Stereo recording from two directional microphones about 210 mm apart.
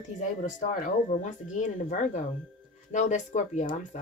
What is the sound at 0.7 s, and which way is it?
Speech, 35° left (ahead or behind).